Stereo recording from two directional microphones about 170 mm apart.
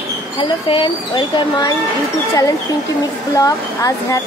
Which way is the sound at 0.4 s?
30° left (ahead or behind).